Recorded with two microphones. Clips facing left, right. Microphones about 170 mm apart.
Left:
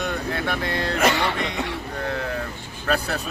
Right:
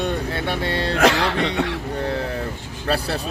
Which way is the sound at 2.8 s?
30° right (ahead or behind).